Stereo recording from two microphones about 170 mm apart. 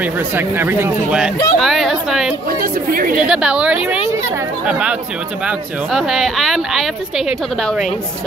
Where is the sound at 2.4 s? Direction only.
55° right (ahead or behind).